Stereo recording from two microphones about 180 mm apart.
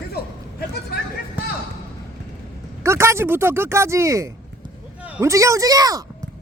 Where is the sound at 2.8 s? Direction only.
15° right (ahead or behind).